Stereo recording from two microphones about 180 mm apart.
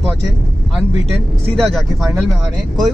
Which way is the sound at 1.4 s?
Centre (ahead or behind).